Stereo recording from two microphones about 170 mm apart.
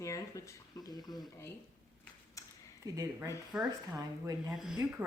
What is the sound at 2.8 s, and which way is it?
Speech, 20° right (ahead or behind).